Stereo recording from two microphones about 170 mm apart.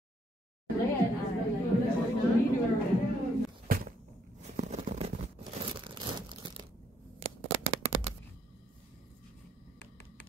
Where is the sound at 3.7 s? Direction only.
55° right (ahead or behind).